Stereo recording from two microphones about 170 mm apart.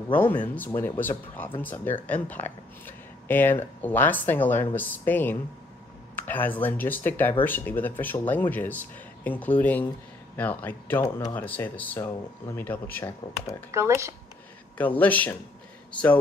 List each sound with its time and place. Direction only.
0.1 s speech: 10° left (ahead or behind)
13.7 s speech: 15° right (ahead or behind)
14.8 s speech: 10° left (ahead or behind)